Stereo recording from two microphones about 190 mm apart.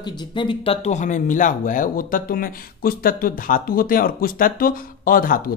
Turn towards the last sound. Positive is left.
turn(degrees=50)  # may be behind; listen again after turning